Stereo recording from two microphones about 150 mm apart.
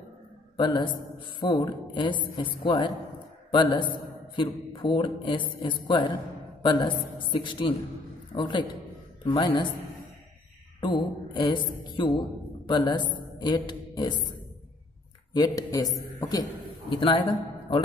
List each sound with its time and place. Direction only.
0.6 s a man's voice: 30° left (ahead or behind)
10.8 s a man's voice: 30° left (ahead or behind)
15.3 s a man's voice: 25° left (ahead or behind)